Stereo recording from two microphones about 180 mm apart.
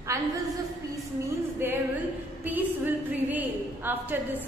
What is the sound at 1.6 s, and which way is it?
Speech, 10° right (ahead or behind).